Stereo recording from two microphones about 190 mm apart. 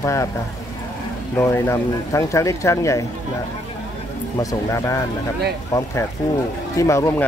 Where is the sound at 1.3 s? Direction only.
15° left (ahead or behind).